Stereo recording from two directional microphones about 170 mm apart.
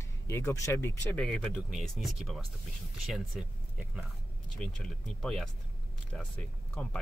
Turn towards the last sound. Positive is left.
turn(degrees=5)  # may be behind; listen again after turning